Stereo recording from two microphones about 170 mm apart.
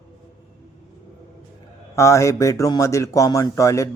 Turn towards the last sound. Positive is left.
turn(degrees=20)  # may be behind; listen again after turning